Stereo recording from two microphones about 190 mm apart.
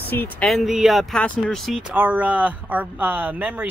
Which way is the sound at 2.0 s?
10° right (ahead or behind).